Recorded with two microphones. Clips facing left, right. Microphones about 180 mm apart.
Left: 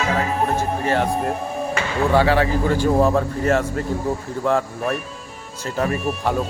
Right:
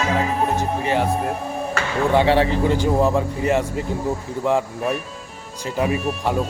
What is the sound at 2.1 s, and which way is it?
Speech, 25° right (ahead or behind).